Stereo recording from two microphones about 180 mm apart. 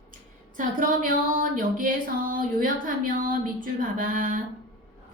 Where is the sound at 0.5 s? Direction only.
50° right (ahead or behind).